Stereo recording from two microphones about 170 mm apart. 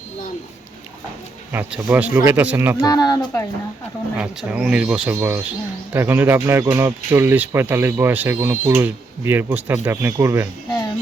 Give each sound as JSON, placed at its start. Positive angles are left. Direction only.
{"t": 1.5, "sound": "speech", "side_deg": -10}
{"t": 2.8, "sound": "speech", "side_deg": 25}
{"t": 4.2, "sound": "speech", "side_deg": -5}